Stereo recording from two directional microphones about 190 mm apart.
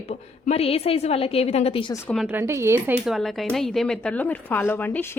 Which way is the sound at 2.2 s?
10° right (ahead or behind).